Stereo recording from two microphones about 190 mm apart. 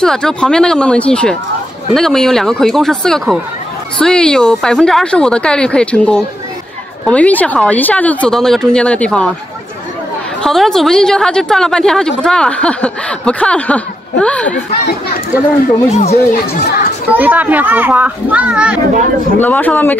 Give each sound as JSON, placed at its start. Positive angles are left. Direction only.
{"t": 0.0, "sound": "speech", "side_deg": 5}
{"t": 10.4, "sound": "speech", "side_deg": 0}
{"t": 15.9, "sound": "speech", "side_deg": 35}
{"t": 16.6, "sound": "a child's voice", "side_deg": 55}
{"t": 17.1, "sound": "a child's voice", "side_deg": -10}
{"t": 19.4, "sound": "speech", "side_deg": 10}